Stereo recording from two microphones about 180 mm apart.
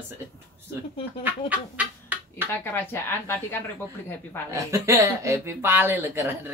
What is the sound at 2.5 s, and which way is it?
Speech, 10° left (ahead or behind).